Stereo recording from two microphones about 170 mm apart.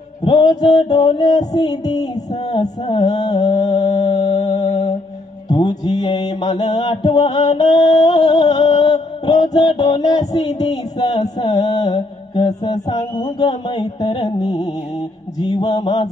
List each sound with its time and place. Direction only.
0.2 s music: 25° left (ahead or behind)
3.3 s mantra: 25° left (ahead or behind)
5.5 s mantra: 25° left (ahead or behind)
15.3 s music: 25° left (ahead or behind)